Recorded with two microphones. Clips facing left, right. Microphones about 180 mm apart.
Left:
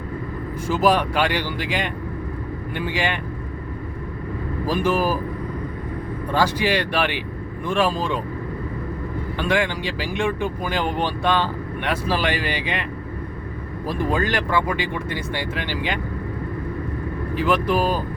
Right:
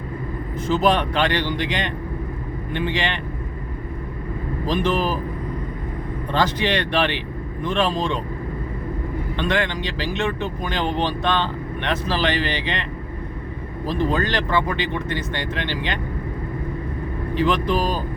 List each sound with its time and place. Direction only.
0.7 s speech: 5° left (ahead or behind)
4.6 s speech: 10° left (ahead or behind)
6.3 s speech: 10° left (ahead or behind)
9.4 s speech: 10° left (ahead or behind)
14.0 s speech: 10° left (ahead or behind)
17.3 s speech: 10° left (ahead or behind)